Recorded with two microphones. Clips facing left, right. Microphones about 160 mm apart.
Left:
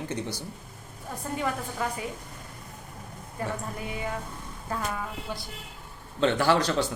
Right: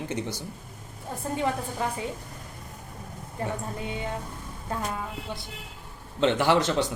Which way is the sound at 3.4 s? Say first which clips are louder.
Right 1 dB; 30° right (ahead or behind).